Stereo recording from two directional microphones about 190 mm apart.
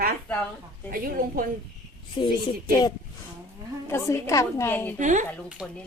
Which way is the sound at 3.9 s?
15° left (ahead or behind).